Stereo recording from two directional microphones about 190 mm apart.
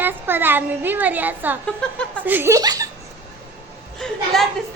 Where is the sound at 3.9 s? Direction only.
Centre (ahead or behind).